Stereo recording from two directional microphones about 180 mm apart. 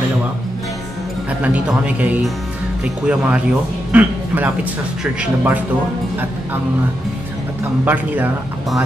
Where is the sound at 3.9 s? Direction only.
10° right (ahead or behind).